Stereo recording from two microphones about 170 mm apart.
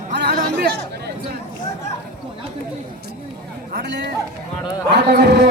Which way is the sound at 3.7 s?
75° right (ahead or behind).